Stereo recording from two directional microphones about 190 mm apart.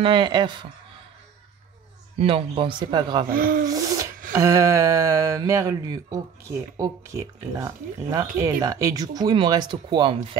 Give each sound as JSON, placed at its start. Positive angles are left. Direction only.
{"t": 0.0, "sound": "speech", "side_deg": -25}
{"t": 2.1, "sound": "speech", "side_deg": -30}
{"t": 3.3, "sound": "speech", "side_deg": -50}
{"t": 3.6, "sound": "a sound", "side_deg": -20}
{"t": 4.3, "sound": "speech", "side_deg": -15}